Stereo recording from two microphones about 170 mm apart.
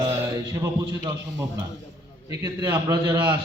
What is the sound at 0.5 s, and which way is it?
A man's voice, 20° right (ahead or behind).